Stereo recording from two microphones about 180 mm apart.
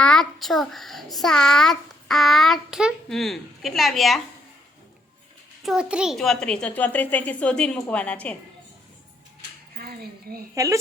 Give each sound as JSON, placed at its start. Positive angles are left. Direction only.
{"t": 0.0, "sound": "a child's voice", "side_deg": 5}
{"t": 5.6, "sound": "a child's voice", "side_deg": -5}
{"t": 9.7, "sound": "speech", "side_deg": -55}
{"t": 10.5, "sound": "a woman's voice", "side_deg": -20}